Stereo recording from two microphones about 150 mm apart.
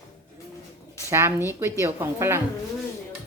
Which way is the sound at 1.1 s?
15° right (ahead or behind).